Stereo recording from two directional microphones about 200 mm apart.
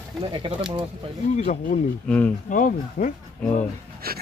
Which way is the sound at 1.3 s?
35° left (ahead or behind).